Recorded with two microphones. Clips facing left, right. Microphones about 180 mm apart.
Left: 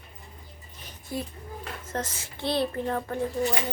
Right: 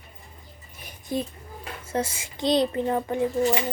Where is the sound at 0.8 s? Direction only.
15° right (ahead or behind).